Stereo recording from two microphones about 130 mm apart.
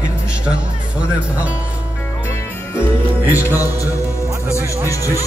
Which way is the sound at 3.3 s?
15° right (ahead or behind).